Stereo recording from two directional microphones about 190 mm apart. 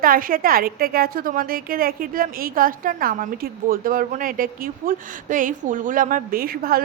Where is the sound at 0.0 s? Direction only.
50° right (ahead or behind).